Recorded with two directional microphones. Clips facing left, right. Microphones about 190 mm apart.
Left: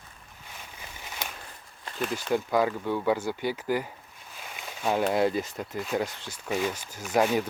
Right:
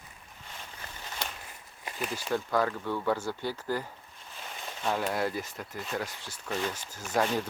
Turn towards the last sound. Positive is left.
turn(degrees=10)  # may be behind; listen again after turning